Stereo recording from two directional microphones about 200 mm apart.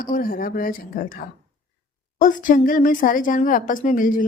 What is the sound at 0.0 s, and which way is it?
Speech, 45° left (ahead or behind).